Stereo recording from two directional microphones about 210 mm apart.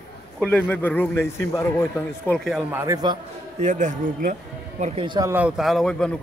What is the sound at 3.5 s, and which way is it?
A man's voice, 35° right (ahead or behind).